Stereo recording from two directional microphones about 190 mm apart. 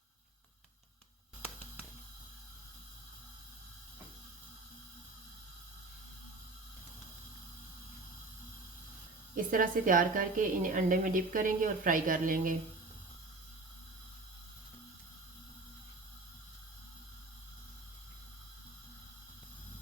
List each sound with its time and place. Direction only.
9.3 s a woman's voice: 45° right (ahead or behind)